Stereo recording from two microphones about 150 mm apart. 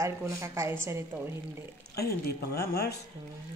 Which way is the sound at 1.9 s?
90° left.